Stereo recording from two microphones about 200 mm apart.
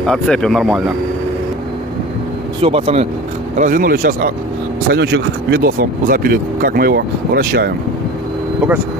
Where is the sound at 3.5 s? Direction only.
40° right (ahead or behind).